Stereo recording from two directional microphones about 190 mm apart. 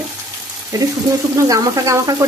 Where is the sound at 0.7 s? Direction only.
20° right (ahead or behind).